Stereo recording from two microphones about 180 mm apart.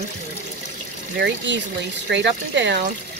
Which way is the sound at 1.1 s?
70° right (ahead or behind).